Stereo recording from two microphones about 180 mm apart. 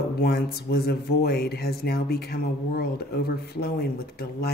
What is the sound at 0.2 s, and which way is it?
Speech, 60° left (ahead or behind).